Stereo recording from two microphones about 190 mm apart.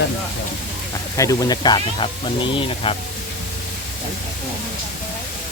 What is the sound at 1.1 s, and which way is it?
Speech, 15° left (ahead or behind).